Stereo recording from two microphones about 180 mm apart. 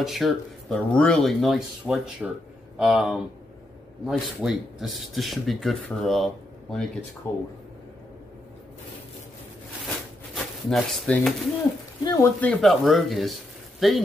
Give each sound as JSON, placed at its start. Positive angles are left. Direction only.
{"t": 0.0, "sound": "speech", "side_deg": 0}
{"t": 7.2, "sound": "speech", "side_deg": 10}
{"t": 10.3, "sound": "speech", "side_deg": 0}
{"t": 12.0, "sound": "speech", "side_deg": 20}
{"t": 12.4, "sound": "speech", "side_deg": 5}